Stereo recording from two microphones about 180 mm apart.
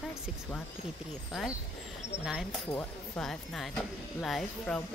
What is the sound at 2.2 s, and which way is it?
Speech, centre (ahead or behind).